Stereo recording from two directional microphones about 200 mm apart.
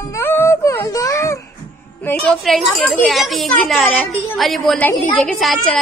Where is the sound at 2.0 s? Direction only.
5° left (ahead or behind).